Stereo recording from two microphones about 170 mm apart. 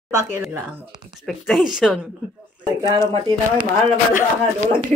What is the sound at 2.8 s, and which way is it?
Speech, 20° left (ahead or behind).